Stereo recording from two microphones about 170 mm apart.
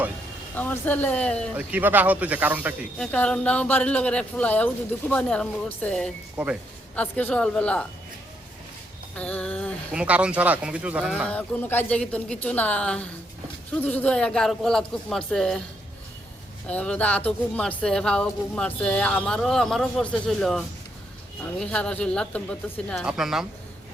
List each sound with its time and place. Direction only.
0.5 s speech: 10° left (ahead or behind)
1.5 s speech: 10° right (ahead or behind)
3.0 s speech: 5° left (ahead or behind)
6.3 s speech: 5° right (ahead or behind)
6.9 s speech: 10° left (ahead or behind)
9.1 s a sound: 5° left (ahead or behind)
9.9 s speech: 5° right (ahead or behind)
11.3 s speech: 10° left (ahead or behind)
16.6 s speech: 5° left (ahead or behind)